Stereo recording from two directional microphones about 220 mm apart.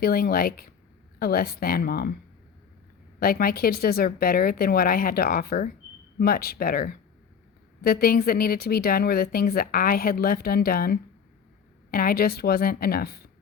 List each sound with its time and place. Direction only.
0.0 s speech: 40° left (ahead or behind)
3.2 s speech: 40° left (ahead or behind)